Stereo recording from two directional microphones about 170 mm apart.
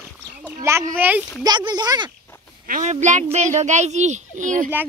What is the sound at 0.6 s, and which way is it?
Speech, 15° right (ahead or behind).